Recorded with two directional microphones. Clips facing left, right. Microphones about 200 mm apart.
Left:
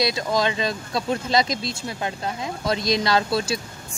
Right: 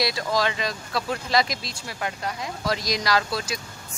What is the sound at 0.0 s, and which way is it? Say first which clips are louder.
Speech: left 2 dB; 20° left (ahead or behind).